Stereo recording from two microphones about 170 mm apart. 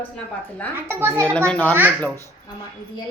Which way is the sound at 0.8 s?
15° right (ahead or behind).